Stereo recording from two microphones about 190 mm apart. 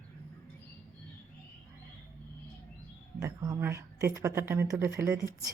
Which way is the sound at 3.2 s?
20° right (ahead or behind).